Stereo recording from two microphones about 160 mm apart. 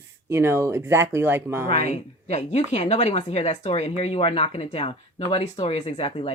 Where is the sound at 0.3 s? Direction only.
15° right (ahead or behind).